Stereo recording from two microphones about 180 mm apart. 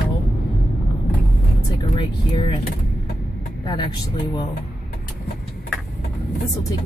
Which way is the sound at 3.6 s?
25° left (ahead or behind).